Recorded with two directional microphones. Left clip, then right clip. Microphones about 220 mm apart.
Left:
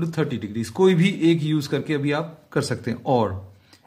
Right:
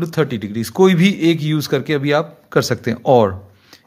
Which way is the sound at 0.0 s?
40° right (ahead or behind).